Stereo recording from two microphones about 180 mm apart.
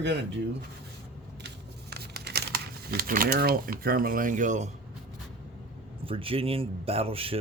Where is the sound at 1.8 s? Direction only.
60° right (ahead or behind); by 4.7 s 45° right (ahead or behind).